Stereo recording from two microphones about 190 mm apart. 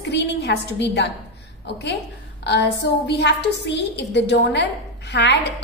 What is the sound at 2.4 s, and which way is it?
A woman's voice, 60° left (ahead or behind).